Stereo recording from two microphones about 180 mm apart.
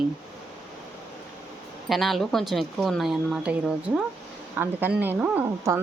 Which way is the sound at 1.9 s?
Centre (ahead or behind).